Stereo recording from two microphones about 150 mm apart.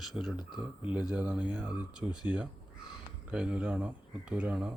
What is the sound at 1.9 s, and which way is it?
Speech, 30° left (ahead or behind).